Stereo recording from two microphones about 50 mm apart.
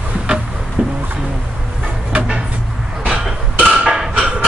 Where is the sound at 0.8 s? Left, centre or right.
Right.